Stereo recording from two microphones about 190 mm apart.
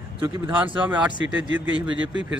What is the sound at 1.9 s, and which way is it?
Speech, 75° right (ahead or behind).